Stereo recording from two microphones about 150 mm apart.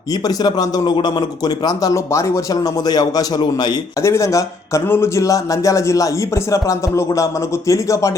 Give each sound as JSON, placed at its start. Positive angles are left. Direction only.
{"t": 0.3, "sound": "speech", "side_deg": 25}